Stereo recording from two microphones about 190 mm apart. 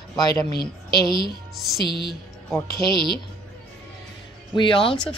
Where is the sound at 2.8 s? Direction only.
25° right (ahead or behind).